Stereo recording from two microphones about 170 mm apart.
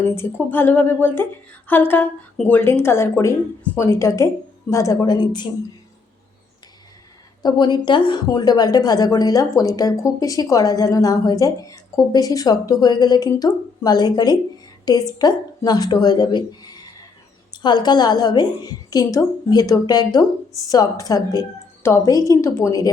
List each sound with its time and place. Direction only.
0.0 s a woman's voice: 15° left (ahead or behind)
7.4 s a woman's voice: 25° left (ahead or behind)